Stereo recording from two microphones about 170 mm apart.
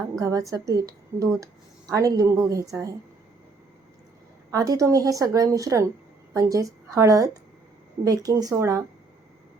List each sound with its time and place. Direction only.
0.2 s a woman's voice: 20° right (ahead or behind)
4.5 s a woman's voice: 20° right (ahead or behind)